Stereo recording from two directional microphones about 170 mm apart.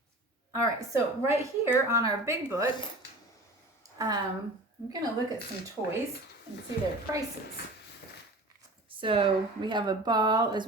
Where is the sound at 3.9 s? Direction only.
20° right (ahead or behind).